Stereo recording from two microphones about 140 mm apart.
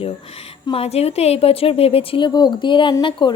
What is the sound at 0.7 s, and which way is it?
A woman's voice, 45° left (ahead or behind).